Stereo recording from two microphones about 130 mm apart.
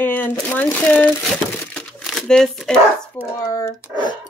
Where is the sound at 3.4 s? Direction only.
35° left (ahead or behind).